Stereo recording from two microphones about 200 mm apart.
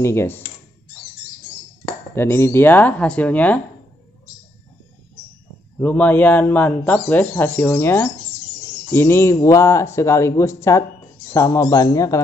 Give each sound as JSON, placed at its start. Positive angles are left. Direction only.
{"t": 0.0, "sound": "speech", "side_deg": 15}
{"t": 2.1, "sound": "speech", "side_deg": 10}
{"t": 5.8, "sound": "speech", "side_deg": 10}